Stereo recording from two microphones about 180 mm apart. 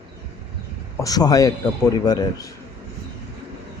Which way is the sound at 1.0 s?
20° left (ahead or behind).